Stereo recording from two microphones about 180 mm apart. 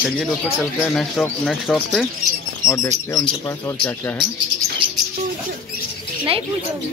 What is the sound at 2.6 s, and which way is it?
Speech, 15° left (ahead or behind).